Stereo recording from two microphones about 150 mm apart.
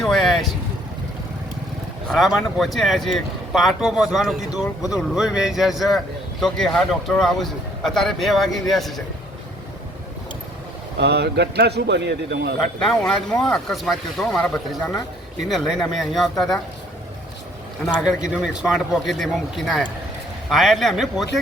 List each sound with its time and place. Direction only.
0.0 s vehicle: centre (ahead or behind)
2.0 s speech: centre (ahead or behind)
11.1 s a man's voice: 90° right
12.8 s speech: 5° left (ahead or behind)
18.0 s speech: 5° right (ahead or behind)